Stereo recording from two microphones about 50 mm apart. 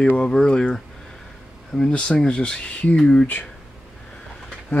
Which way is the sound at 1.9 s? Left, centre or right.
Centre.